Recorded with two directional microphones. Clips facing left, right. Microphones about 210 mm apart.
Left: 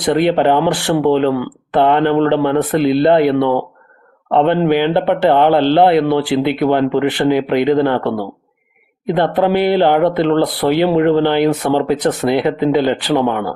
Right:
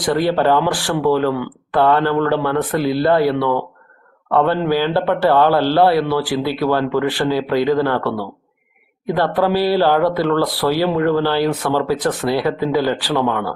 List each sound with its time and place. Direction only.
0.0 s a man's voice: 20° left (ahead or behind)